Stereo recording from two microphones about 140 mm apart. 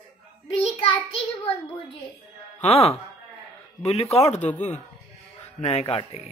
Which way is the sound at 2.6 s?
45° left (ahead or behind).